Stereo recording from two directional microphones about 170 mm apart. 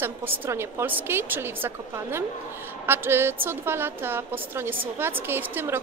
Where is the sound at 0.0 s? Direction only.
15° right (ahead or behind).